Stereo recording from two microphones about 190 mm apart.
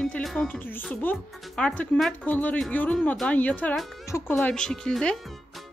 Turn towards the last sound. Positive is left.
turn(degrees=0)  # may be behind; listen again after turning